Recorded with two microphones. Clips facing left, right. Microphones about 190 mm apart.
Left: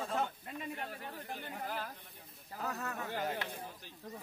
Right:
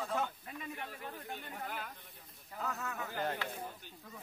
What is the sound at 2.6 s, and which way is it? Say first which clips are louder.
Speech: left 1 dB; 35° left (ahead or behind).